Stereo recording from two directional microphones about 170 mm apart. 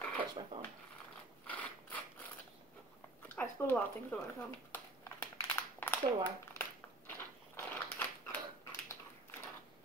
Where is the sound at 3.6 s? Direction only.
10° left (ahead or behind).